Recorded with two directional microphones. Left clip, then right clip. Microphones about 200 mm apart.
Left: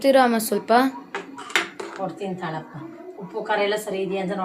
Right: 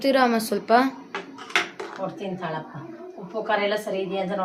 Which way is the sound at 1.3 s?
10° left (ahead or behind).